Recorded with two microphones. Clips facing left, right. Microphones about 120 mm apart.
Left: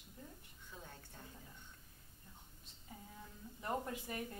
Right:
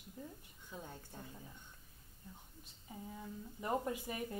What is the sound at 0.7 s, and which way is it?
Speech, 20° right (ahead or behind).